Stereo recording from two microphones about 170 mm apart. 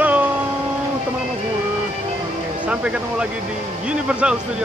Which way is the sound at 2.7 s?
5° right (ahead or behind).